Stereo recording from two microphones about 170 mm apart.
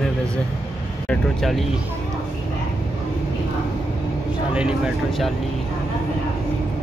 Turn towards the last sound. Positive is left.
turn(degrees=-5)  # may be behind; listen again after turning